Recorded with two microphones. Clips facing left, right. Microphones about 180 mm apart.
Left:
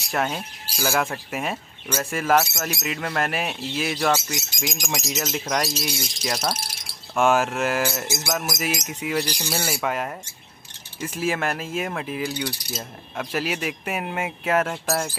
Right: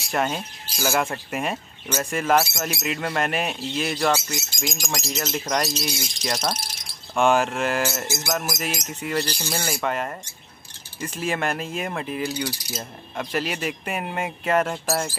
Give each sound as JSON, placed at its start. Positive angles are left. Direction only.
{"t": 0.1, "sound": "mechanisms", "side_deg": 0}
{"t": 8.5, "sound": "speech", "side_deg": 5}
{"t": 9.5, "sound": "mechanisms", "side_deg": 5}
{"t": 14.9, "sound": "speech", "side_deg": -10}